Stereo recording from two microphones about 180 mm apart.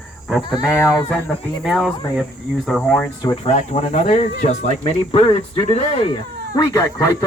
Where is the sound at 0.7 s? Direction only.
15° left (ahead or behind).